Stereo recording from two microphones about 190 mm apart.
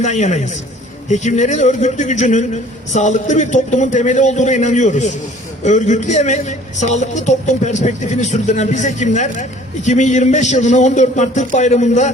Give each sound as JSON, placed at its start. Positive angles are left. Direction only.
{"t": 0.0, "sound": "a man's voice", "side_deg": 40}